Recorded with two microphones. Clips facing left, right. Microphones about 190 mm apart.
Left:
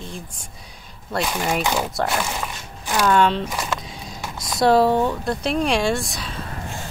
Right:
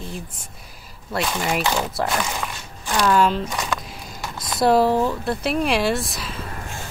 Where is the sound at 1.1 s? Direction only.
10° left (ahead or behind).